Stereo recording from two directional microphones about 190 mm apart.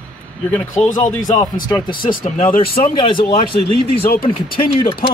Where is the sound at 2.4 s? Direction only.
50° left (ahead or behind).